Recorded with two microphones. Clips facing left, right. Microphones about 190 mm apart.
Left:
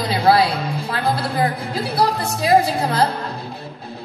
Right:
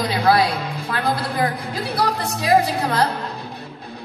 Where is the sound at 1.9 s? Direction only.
30° left (ahead or behind).